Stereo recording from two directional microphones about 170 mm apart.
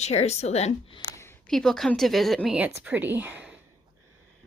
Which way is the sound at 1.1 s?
15° left (ahead or behind).